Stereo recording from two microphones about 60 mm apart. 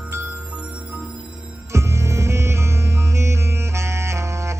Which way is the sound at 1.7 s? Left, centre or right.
Right.